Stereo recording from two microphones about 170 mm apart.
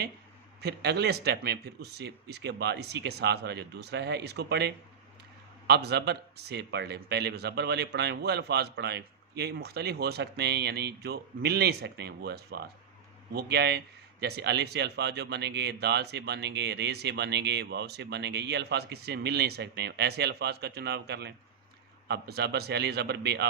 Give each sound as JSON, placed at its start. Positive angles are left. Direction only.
{"t": 0.6, "sound": "speech", "side_deg": -75}